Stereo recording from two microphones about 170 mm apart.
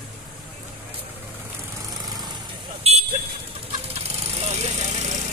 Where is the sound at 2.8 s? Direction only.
35° right (ahead or behind).